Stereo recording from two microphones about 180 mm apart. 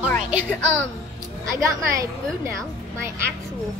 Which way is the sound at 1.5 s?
15° right (ahead or behind).